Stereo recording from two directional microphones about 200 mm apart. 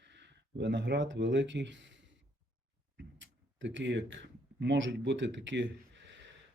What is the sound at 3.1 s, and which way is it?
Speech, 65° right (ahead or behind).